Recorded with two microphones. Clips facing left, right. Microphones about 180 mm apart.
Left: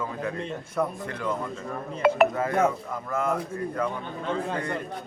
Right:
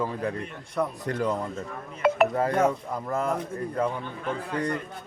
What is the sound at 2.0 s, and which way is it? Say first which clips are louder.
Speech: left 1 dB; centre (ahead or behind).